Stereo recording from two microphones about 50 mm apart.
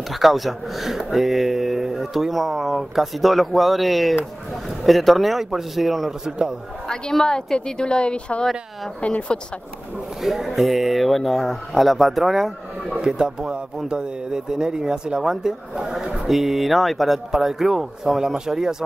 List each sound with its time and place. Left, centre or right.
0.1 s speech: centre
6.2 s speech: centre
6.9 s a woman's voice: centre; by 9.4 s left
10.2 s speech: centre
12.9 s speech: centre